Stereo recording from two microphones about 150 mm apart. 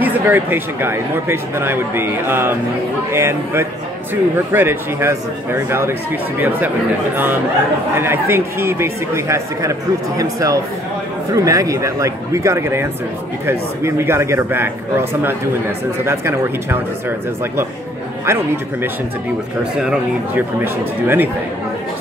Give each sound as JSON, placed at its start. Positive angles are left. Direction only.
{"t": 0.0, "sound": "speech", "side_deg": -15}
{"t": 7.9, "sound": "speech", "side_deg": -15}
{"t": 18.2, "sound": "speech", "side_deg": -15}
{"t": 19.8, "sound": "speech", "side_deg": -5}
{"t": 20.6, "sound": "speech", "side_deg": -15}